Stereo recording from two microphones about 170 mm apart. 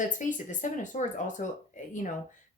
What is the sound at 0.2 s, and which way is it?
Speech, 50° left (ahead or behind).